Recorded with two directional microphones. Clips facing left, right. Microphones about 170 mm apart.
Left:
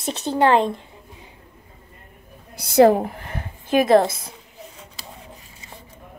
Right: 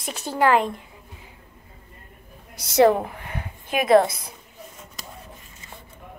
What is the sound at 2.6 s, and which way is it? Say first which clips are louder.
A woman's voice: left 3 dB; 35° left (ahead or behind).